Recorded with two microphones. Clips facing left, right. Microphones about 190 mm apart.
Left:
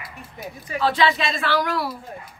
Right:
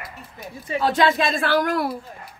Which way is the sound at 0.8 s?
45° right (ahead or behind).